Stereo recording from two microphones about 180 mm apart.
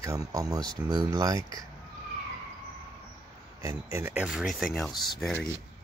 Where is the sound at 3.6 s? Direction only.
15° right (ahead or behind); by 5.4 s centre (ahead or behind).